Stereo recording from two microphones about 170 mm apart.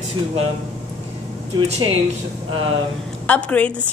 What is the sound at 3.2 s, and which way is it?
Speech, 10° left (ahead or behind).